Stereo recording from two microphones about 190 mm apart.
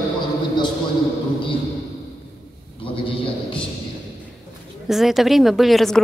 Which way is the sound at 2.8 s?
30° left (ahead or behind).